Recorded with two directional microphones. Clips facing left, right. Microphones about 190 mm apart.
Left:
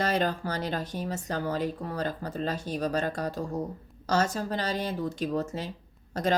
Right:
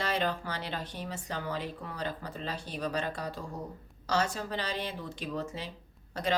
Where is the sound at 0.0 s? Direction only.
45° left (ahead or behind).